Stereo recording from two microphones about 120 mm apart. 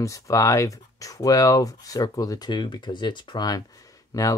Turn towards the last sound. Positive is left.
turn(degrees=25)  # may be behind; listen again after turning